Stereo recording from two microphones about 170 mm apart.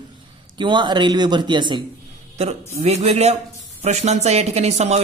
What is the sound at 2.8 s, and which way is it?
Speech, 40° right (ahead or behind).